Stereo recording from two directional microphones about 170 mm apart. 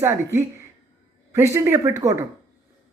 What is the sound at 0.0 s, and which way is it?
A man's voice, 15° right (ahead or behind).